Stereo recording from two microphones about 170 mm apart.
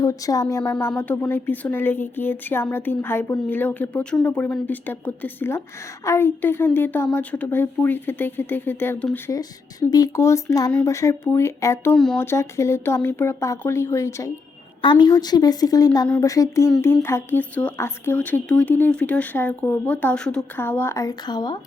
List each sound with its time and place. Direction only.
0.0 s a woman's voice: 20° left (ahead or behind)
14.8 s a woman's voice: 25° left (ahead or behind)